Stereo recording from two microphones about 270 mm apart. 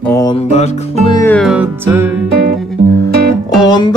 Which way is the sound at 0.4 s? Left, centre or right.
Left.